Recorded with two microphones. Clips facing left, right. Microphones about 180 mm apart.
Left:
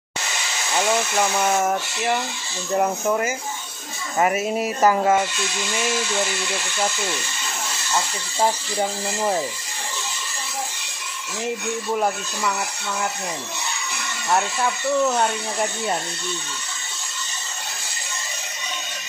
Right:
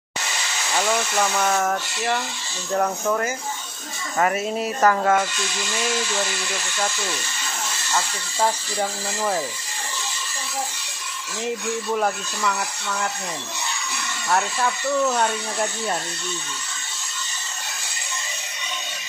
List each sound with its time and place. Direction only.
1.2 s speech: 15° left (ahead or behind)
7.9 s speech: 15° left (ahead or behind)
11.9 s speech: 10° left (ahead or behind)
14.3 s speech: 10° left (ahead or behind)